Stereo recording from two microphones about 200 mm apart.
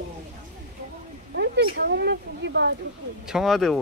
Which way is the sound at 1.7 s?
55° right (ahead or behind).